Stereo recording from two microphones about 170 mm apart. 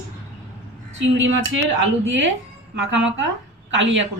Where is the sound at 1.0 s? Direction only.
90° right.